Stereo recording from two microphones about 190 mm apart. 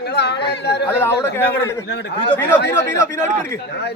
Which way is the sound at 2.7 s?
15° left (ahead or behind).